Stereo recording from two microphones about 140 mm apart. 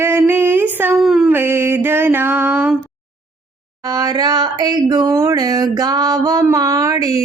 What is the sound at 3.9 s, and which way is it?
Speech, 30° right (ahead or behind).